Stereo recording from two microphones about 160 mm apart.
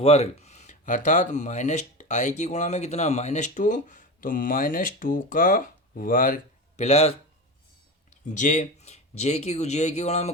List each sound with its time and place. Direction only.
0.0 s speech: 40° left (ahead or behind); by 6.8 s 60° left (ahead or behind)
6.8 s speech: 40° left (ahead or behind)
8.2 s speech: 50° left (ahead or behind)